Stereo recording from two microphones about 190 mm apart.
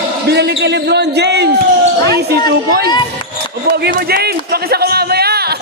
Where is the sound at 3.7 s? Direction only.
65° right (ahead or behind).